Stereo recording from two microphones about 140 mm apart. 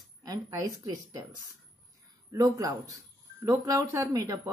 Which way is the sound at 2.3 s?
25° right (ahead or behind).